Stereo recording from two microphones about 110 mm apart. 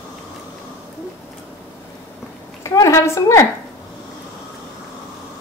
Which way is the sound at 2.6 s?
25° left (ahead or behind).